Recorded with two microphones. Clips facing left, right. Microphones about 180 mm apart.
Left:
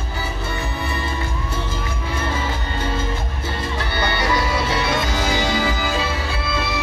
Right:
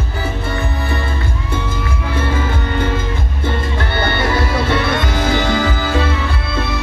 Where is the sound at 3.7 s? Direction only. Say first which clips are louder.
Right 4 dB; 55° right (ahead or behind).